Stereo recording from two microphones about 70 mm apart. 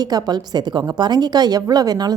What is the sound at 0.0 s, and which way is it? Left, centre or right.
A woman's voice, right.